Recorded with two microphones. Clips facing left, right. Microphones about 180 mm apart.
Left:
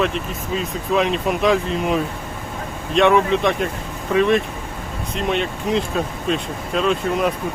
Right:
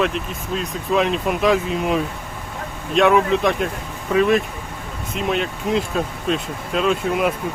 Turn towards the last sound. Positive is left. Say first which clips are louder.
# even
turn(degrees=-5)  # may be behind; listen again after turning